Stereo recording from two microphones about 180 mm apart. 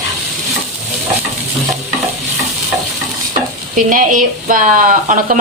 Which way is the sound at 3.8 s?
45° right (ahead or behind).